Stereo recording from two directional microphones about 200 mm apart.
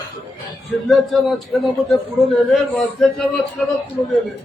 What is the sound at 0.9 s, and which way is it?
A man's voice, centre (ahead or behind).